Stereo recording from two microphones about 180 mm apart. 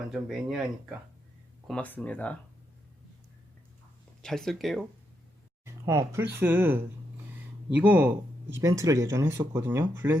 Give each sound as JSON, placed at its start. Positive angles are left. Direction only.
{"t": 0.1, "sound": "speech", "side_deg": 0}
{"t": 4.2, "sound": "speech", "side_deg": 0}
{"t": 5.6, "sound": "speech", "side_deg": -15}